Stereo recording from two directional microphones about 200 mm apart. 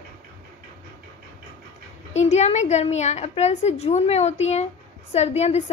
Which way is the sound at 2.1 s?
35° left (ahead or behind).